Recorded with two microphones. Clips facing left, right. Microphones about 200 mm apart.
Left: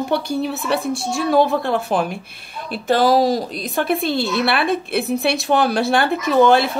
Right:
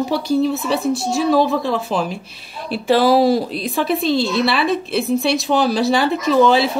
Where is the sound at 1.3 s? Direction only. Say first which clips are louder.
Even; 60° left (ahead or behind).